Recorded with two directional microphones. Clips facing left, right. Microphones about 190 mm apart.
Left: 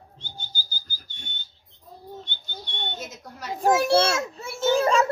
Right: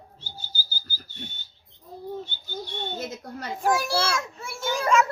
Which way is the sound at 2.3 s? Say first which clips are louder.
Right 6 dB; 5° right (ahead or behind).